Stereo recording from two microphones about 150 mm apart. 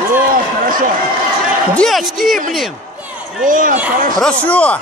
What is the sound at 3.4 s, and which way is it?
Speech, 65° right (ahead or behind).